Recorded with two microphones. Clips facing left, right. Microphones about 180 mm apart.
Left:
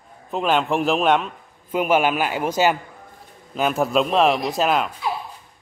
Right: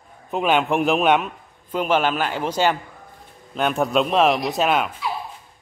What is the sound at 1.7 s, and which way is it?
A man's voice, 10° left (ahead or behind).